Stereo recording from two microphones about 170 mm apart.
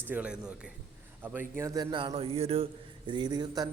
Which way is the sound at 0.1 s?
5° right (ahead or behind).